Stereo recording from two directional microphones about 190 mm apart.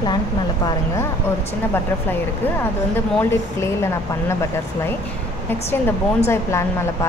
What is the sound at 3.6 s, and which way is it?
Speech, 15° left (ahead or behind).